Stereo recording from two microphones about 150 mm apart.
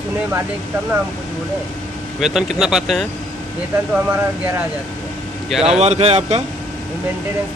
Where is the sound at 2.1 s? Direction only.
5° right (ahead or behind).